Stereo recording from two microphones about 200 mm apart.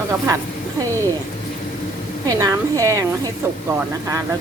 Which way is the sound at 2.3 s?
15° right (ahead or behind).